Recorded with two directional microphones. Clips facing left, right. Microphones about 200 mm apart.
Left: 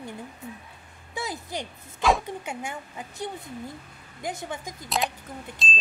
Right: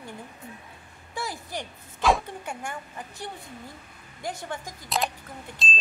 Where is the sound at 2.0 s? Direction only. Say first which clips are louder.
Even; 5° left (ahead or behind).